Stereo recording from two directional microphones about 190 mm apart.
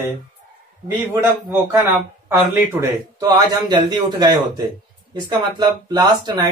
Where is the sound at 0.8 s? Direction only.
10° right (ahead or behind).